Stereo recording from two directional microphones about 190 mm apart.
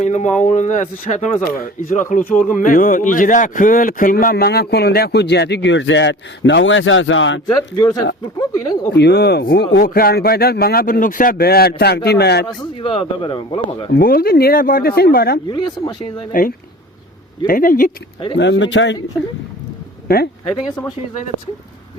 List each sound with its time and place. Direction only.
0.0 s a man's voice: 40° left (ahead or behind); by 7.4 s 80° left
7.4 s a man's voice: 20° left (ahead or behind)
9.0 s a man's voice: 60° left (ahead or behind)
12.5 s a man's voice: 30° left (ahead or behind)
13.9 s speech: 50° left (ahead or behind)
15.4 s a man's voice: 25° left (ahead or behind)
17.4 s speech: 50° left (ahead or behind)
18.3 s speech: 70° left (ahead or behind)
20.1 s speech: 50° left (ahead or behind)
20.5 s speech: 15° left (ahead or behind)